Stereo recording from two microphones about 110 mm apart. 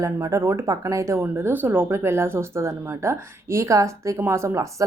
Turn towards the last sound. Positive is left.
turn(degrees=-25)  # may be behind; listen again after turning